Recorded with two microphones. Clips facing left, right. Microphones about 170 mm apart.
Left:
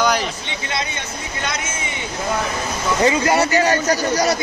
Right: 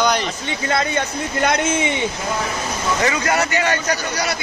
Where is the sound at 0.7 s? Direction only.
50° right (ahead or behind).